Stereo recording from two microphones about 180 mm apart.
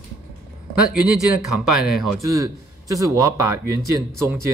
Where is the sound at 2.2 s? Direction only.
20° right (ahead or behind).